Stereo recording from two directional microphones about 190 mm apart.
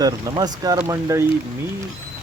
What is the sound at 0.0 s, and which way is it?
Speech, 20° right (ahead or behind).